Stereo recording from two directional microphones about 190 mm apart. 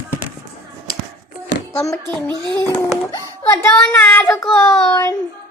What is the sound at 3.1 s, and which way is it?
Music, 10° left (ahead or behind).